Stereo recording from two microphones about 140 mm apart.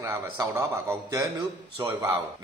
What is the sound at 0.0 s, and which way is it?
A man's voice, 20° right (ahead or behind).